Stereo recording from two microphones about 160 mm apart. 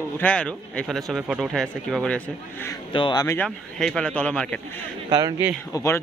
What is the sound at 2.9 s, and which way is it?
Speech, 30° left (ahead or behind).